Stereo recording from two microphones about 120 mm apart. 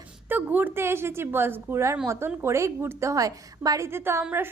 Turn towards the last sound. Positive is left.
turn(degrees=-20)  # may be behind; listen again after turning